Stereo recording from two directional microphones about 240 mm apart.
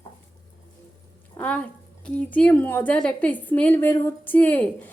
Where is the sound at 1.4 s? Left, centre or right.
Centre.